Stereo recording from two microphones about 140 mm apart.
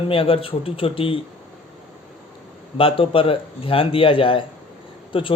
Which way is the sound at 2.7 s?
40° left (ahead or behind).